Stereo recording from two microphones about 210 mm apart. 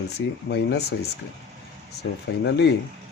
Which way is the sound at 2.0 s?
55° left (ahead or behind).